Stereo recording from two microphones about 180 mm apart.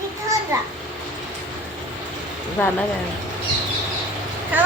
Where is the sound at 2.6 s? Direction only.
10° left (ahead or behind).